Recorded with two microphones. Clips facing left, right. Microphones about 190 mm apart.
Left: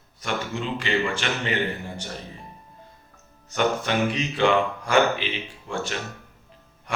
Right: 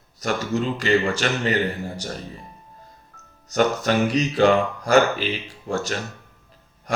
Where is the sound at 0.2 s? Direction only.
40° right (ahead or behind).